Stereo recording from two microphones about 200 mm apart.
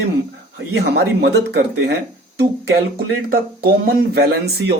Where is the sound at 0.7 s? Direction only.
55° right (ahead or behind).